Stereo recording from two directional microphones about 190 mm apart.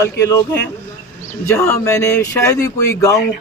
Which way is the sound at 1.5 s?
15° left (ahead or behind).